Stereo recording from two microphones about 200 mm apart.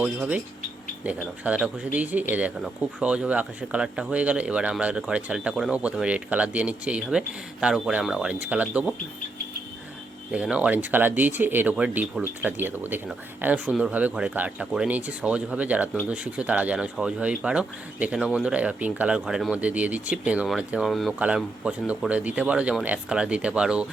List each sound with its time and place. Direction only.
0.0 s speech: 5° right (ahead or behind)
10.3 s speech: 5° right (ahead or behind)